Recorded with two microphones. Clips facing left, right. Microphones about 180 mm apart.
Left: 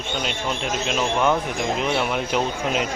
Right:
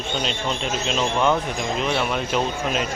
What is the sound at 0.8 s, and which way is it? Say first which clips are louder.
Speech: even; 10° left (ahead or behind).